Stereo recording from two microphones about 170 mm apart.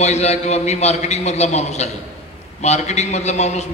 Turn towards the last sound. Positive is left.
turn(degrees=40)  # may be behind; listen again after turning